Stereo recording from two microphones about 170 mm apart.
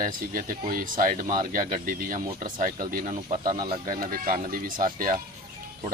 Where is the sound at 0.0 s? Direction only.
55° right (ahead or behind).